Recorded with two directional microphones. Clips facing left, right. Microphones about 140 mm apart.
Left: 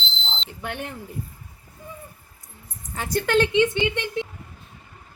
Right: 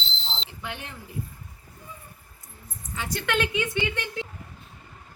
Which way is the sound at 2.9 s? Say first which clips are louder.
Left 6 dB; 40° left (ahead or behind).